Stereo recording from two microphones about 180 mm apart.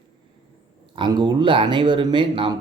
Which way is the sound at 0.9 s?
25° right (ahead or behind).